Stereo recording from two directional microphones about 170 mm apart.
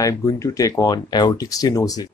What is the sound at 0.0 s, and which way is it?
Speech, 20° left (ahead or behind).